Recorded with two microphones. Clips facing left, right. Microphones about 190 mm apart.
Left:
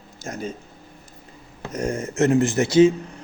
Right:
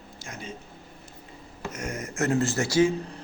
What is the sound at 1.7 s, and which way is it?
Speech, 30° left (ahead or behind).